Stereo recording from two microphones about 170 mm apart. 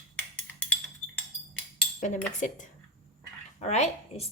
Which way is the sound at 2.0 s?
50° left (ahead or behind).